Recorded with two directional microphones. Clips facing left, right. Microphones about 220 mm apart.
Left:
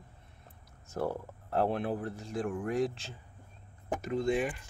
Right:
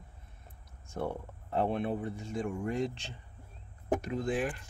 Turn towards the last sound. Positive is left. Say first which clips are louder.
# left 2 dB
turn(degrees=0)  # may be behind; listen again after turning